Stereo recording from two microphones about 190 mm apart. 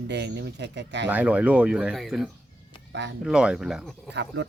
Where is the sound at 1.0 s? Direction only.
5° right (ahead or behind).